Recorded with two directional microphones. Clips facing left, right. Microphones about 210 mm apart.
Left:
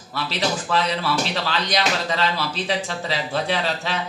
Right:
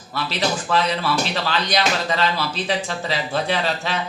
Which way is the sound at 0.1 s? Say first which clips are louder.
Right 1 dB; 50° right (ahead or behind).